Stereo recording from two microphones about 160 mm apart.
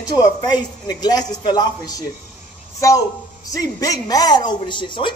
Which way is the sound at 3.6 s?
25° left (ahead or behind).